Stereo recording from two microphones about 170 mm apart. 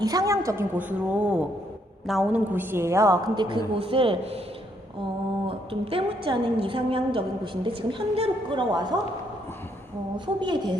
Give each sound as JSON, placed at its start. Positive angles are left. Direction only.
{"t": 0.0, "sound": "a woman's voice", "side_deg": -20}
{"t": 5.5, "sound": "a woman's voice", "side_deg": -35}
{"t": 10.4, "sound": "speech", "side_deg": -25}